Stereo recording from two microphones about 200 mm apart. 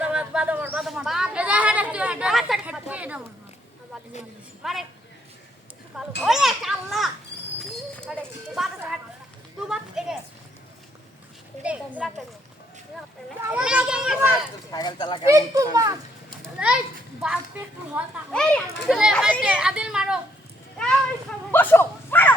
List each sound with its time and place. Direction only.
0.0 s a sound: 5° right (ahead or behind)
4.6 s a child's voice: centre (ahead or behind)
6.0 s a child's voice: centre (ahead or behind)
7.6 s a sound: 5° left (ahead or behind)
8.5 s a child's voice: centre (ahead or behind)
11.6 s a child's voice: 5° right (ahead or behind)
13.4 s a child's voice: 5° right (ahead or behind)
14.7 s speech: 20° left (ahead or behind)
15.5 s a woman's voice: 15° right (ahead or behind)
16.4 s children playing: 5° right (ahead or behind)
17.2 s a woman's voice: 10° right (ahead or behind)
18.3 s a child's voice: 5° left (ahead or behind)
20.7 s a sound: 5° left (ahead or behind)